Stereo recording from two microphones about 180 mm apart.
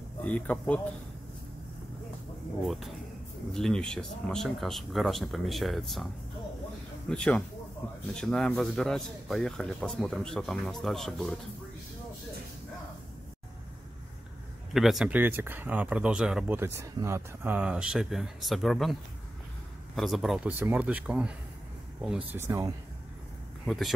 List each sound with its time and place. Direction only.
0.2 s speech: 5° left (ahead or behind)
2.6 s speech: centre (ahead or behind)
7.1 s speech: 5° left (ahead or behind)
14.7 s speech: centre (ahead or behind)
20.0 s speech: centre (ahead or behind)
22.3 s speech: 15° right (ahead or behind)
23.6 s speech: centre (ahead or behind)